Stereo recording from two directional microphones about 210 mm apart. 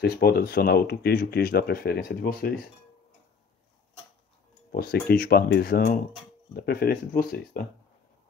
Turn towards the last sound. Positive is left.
turn(degrees=45)  # may be behind; listen again after turning